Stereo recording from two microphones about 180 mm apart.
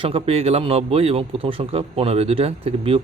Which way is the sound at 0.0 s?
35° right (ahead or behind).